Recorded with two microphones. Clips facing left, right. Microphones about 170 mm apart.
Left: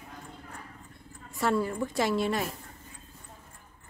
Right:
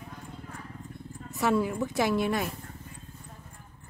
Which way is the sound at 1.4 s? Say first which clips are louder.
Right 1 dB; 5° right (ahead or behind).